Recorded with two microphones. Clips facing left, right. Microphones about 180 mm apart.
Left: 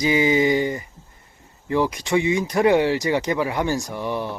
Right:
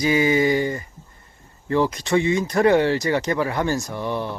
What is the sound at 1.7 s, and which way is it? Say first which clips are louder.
Speech: right 1 dB; 15° left (ahead or behind).